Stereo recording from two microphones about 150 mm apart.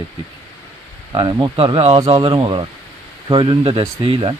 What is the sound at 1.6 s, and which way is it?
Speech, 40° right (ahead or behind).